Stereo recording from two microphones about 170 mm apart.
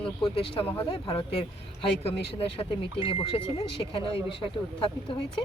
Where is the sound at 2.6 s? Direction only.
30° left (ahead or behind).